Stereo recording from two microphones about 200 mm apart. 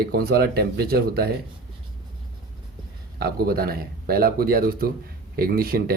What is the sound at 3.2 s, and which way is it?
Speech, 50° right (ahead or behind).